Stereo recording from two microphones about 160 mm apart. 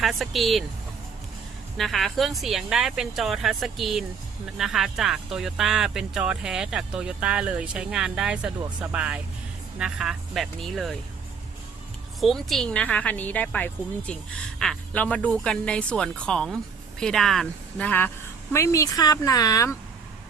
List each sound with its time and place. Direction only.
0.0 s speech: centre (ahead or behind)
1.8 s speech: centre (ahead or behind)
12.2 s speech: centre (ahead or behind); by 19.7 s 20° left (ahead or behind)